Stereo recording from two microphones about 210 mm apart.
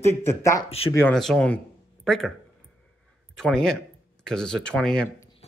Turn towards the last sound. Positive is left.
turn(degrees=5)  # may be behind; listen again after turning